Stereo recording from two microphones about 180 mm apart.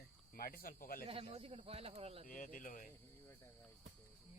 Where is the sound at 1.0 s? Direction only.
30° right (ahead or behind).